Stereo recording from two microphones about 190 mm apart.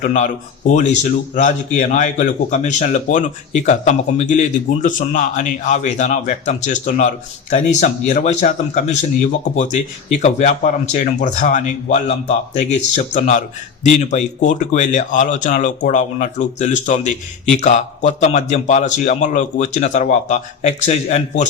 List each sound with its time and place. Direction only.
0.0 s speech: 40° left (ahead or behind)
10.2 s speech: 40° left (ahead or behind)